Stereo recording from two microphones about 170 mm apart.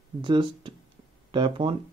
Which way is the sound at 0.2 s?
30° right (ahead or behind).